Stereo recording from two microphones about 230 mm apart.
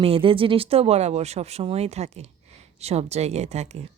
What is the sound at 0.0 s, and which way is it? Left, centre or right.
A woman's voice, right.